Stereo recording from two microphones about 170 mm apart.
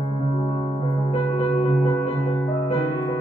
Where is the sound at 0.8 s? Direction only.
35° left (ahead or behind).